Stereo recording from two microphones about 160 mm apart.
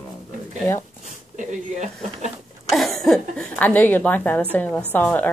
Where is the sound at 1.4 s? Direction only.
50° right (ahead or behind).